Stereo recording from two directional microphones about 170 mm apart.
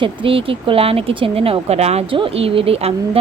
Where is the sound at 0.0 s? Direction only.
30° right (ahead or behind).